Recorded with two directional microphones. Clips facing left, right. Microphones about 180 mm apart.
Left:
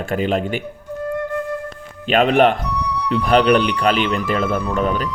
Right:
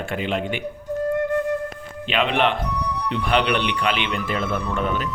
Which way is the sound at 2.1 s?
45° left (ahead or behind).